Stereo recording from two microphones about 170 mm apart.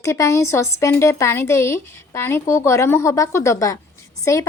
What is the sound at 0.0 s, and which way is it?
Speech, 20° left (ahead or behind).